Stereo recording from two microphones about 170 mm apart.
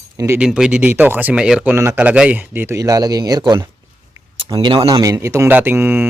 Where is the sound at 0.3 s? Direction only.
5° right (ahead or behind).